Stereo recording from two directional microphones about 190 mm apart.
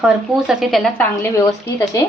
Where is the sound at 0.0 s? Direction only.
5° right (ahead or behind).